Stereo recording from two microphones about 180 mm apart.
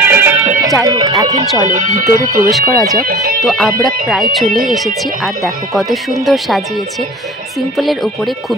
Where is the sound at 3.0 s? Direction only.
55° right (ahead or behind).